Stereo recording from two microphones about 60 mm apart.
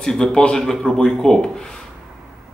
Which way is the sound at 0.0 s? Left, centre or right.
Centre.